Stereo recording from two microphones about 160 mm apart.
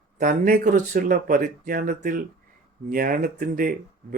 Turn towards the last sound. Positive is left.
turn(degrees=-60)  # may be behind; listen again after turning